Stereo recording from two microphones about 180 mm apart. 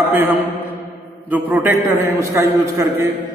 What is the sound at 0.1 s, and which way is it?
Mantra, 10° right (ahead or behind).